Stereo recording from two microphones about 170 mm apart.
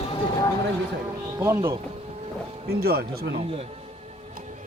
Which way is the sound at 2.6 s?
65° right (ahead or behind).